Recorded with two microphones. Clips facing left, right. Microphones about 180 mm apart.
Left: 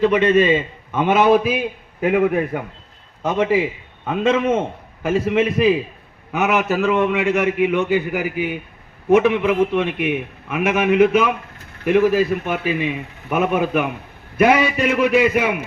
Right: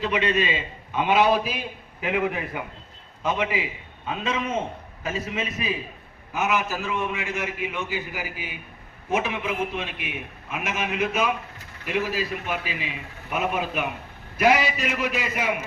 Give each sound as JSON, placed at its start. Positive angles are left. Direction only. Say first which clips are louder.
{"t": 0.0, "sound": "a man's voice", "louder": "left 9 dB", "side_deg": 50}